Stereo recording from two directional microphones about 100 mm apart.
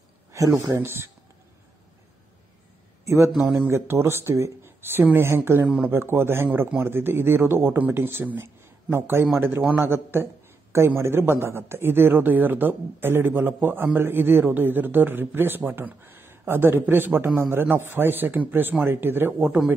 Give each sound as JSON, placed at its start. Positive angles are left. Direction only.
{"t": 0.3, "sound": "a man's voice", "side_deg": -30}
{"t": 3.3, "sound": "speech", "side_deg": 0}
{"t": 3.6, "sound": "a man's voice", "side_deg": -25}